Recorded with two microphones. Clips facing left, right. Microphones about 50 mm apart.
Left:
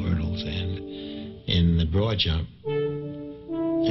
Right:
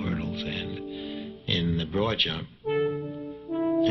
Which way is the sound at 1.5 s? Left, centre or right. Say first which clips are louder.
Left 3 dB; centre.